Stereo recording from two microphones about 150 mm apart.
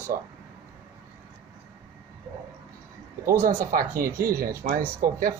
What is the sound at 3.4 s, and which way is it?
Speech, 70° right (ahead or behind).